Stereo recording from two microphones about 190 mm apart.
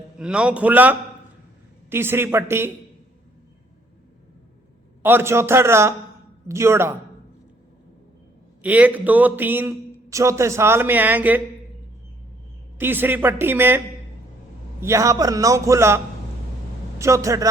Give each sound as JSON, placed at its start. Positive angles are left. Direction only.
{"t": 0.2, "sound": "a man's voice", "side_deg": -5}
{"t": 5.0, "sound": "a man's voice", "side_deg": -10}
{"t": 8.6, "sound": "a man's voice", "side_deg": -10}
{"t": 12.8, "sound": "a man's voice", "side_deg": -10}
{"t": 17.0, "sound": "a man's voice", "side_deg": -15}